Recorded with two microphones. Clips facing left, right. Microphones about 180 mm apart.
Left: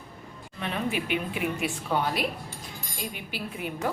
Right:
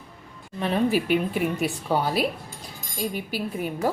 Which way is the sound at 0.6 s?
35° right (ahead or behind).